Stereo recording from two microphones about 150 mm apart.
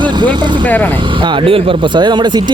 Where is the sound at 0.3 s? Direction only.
10° left (ahead or behind).